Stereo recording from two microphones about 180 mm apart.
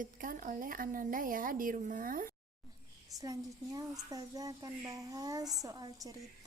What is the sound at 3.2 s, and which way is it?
A child's voice, 20° right (ahead or behind).